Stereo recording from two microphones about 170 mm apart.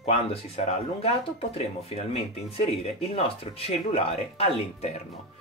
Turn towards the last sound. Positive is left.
turn(degrees=40)  # may be behind; listen again after turning